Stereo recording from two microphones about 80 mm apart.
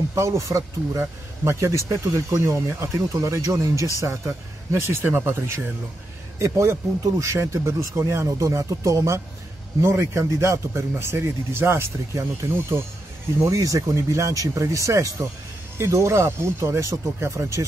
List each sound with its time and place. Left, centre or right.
0.1 s speech: right